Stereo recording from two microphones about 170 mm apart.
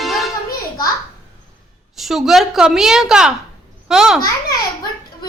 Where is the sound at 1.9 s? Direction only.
Centre (ahead or behind).